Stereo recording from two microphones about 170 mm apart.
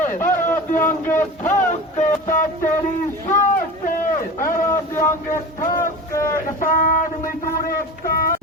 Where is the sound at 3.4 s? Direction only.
50° left (ahead or behind).